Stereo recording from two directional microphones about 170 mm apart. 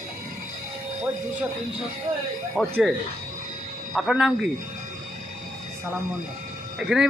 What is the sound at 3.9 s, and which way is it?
Speech, 5° right (ahead or behind).